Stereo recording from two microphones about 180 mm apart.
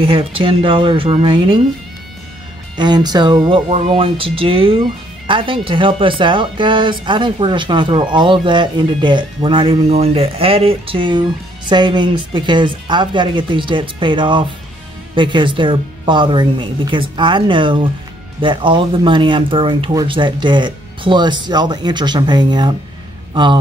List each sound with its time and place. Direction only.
0.0 s speech: 30° right (ahead or behind)
2.8 s a man's voice: 25° right (ahead or behind)